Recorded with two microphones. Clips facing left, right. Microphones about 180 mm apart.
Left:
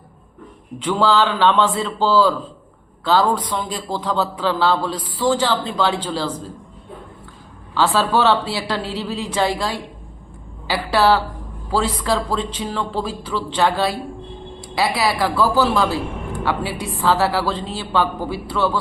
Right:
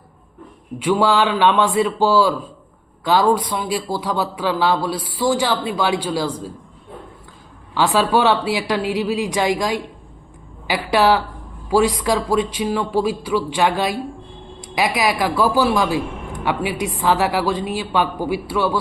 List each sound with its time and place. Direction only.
0.8 s a man's voice: 10° right (ahead or behind)
7.7 s a man's voice: 15° right (ahead or behind)